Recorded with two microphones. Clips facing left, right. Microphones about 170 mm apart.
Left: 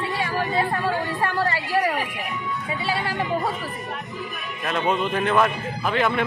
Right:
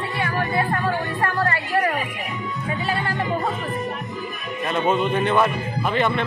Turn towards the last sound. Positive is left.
turn(degrees=0)  # may be behind; listen again after turning